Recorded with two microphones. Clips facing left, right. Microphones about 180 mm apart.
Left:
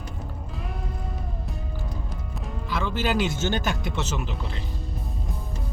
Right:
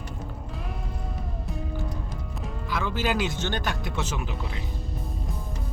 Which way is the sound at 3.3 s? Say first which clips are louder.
Left 3 dB; 5° left (ahead or behind).